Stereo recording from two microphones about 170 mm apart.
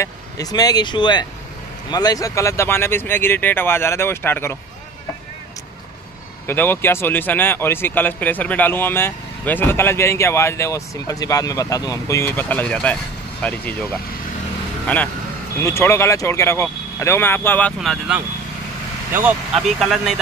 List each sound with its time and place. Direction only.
0.0 s speech: 20° left (ahead or behind)
6.4 s speech: 15° left (ahead or behind)
14.9 s speech: 10° left (ahead or behind)
19.1 s speech: 5° right (ahead or behind)